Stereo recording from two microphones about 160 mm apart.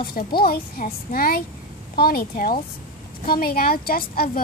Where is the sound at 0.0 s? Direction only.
70° left (ahead or behind).